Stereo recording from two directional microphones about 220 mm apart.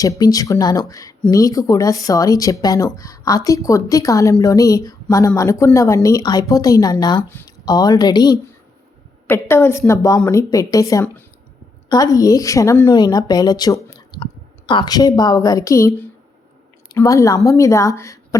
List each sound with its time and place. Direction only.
0.0 s speech: 15° left (ahead or behind)